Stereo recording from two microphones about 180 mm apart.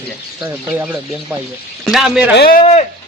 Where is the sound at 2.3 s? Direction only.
60° left (ahead or behind).